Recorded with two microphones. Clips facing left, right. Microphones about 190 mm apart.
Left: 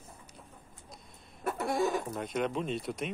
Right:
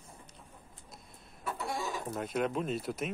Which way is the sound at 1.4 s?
55° left (ahead or behind).